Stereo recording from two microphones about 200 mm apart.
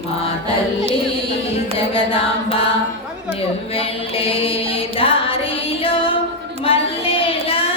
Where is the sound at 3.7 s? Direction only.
30° left (ahead or behind).